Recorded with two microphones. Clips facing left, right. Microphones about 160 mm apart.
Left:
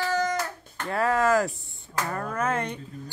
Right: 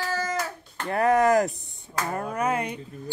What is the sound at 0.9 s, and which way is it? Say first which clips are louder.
Speech: right 3 dB; 20° right (ahead or behind).